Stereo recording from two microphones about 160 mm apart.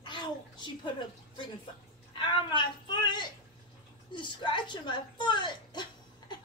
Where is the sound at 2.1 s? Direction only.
30° left (ahead or behind).